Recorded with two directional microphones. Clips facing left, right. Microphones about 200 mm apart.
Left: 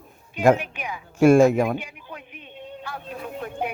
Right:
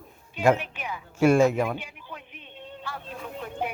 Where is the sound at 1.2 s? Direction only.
50° left (ahead or behind).